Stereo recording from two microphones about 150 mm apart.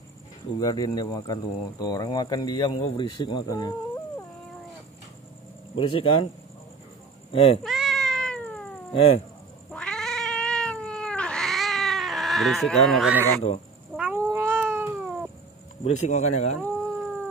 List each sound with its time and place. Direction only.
0.6 s speech: 25° left (ahead or behind)
5.8 s speech: 35° left (ahead or behind)
7.3 s speech: 35° left (ahead or behind)
7.6 s cat: centre (ahead or behind)
8.9 s speech: 40° left (ahead or behind)
9.7 s cat: 5° left (ahead or behind)
13.9 s cat: 10° right (ahead or behind)
15.8 s speech: 50° left (ahead or behind)